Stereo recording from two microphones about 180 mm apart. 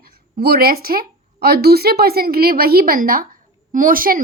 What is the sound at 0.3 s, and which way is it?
A woman's voice, 60° right (ahead or behind).